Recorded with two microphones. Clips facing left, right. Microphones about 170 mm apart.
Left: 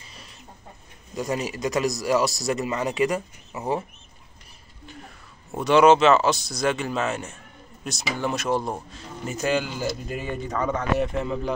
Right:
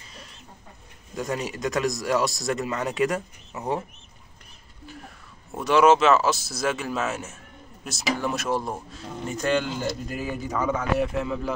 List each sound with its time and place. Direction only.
1.1 s speech: centre (ahead or behind)
5.6 s speech: centre (ahead or behind)